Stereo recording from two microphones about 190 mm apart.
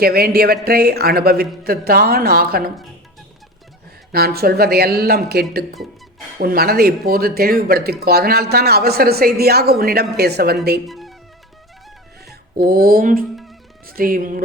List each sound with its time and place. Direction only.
0.0 s a woman's voice: 55° right (ahead or behind)
4.1 s speech: 55° right (ahead or behind)
5.7 s music: centre (ahead or behind)
6.4 s speech: 50° right (ahead or behind)
10.8 s speech: centre (ahead or behind)
12.2 s speech: 55° right (ahead or behind)